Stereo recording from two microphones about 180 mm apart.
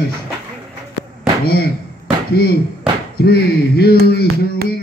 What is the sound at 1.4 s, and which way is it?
Speech, 60° left (ahead or behind).